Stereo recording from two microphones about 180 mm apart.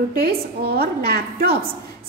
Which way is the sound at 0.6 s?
60° right (ahead or behind).